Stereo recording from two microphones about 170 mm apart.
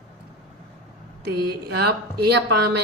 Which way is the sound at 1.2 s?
70° right (ahead or behind).